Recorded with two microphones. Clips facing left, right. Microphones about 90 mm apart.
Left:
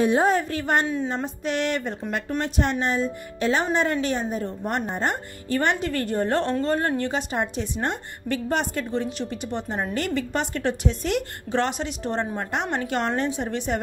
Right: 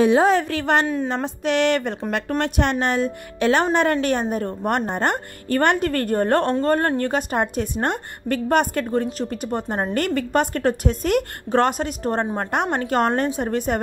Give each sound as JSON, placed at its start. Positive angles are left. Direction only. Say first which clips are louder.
{"t": 0.0, "sound": "a woman's voice", "louder": "right 4 dB", "side_deg": -90}
{"t": 1.0, "sound": "a woman's voice", "louder": "right 4 dB", "side_deg": -75}